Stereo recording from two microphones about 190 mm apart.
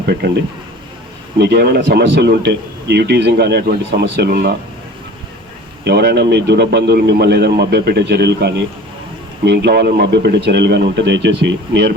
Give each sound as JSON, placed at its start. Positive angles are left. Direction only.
{"t": 0.0, "sound": "speech", "side_deg": -60}
{"t": 1.4, "sound": "a man's voice", "side_deg": -60}
{"t": 5.8, "sound": "a man's voice", "side_deg": -60}